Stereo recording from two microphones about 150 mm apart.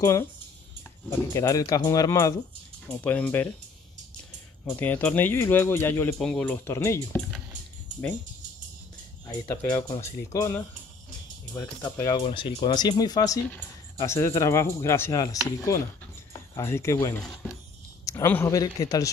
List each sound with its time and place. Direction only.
0.0 s speech: 20° left (ahead or behind)
2.9 s speech: 10° left (ahead or behind)
4.7 s speech: 10° left (ahead or behind)
9.5 s speech: 10° left (ahead or behind)
9.8 s speech: 20° left (ahead or behind)
12.3 s speech: 40° left (ahead or behind)